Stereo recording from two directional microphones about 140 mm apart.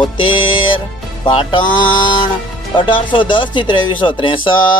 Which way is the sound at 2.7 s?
35° left (ahead or behind).